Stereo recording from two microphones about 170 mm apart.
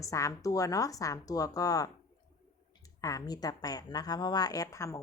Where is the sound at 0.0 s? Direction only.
20° left (ahead or behind).